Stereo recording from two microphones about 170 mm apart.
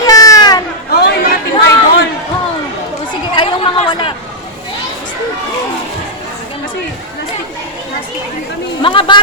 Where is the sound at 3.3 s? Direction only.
30° left (ahead or behind).